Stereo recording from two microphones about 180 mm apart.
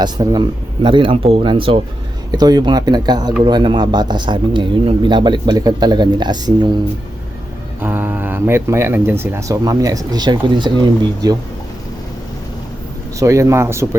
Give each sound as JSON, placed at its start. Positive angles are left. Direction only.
{"t": 0.0, "sound": "speech", "side_deg": -20}
{"t": 7.8, "sound": "speech", "side_deg": -10}
{"t": 13.1, "sound": "speech", "side_deg": -15}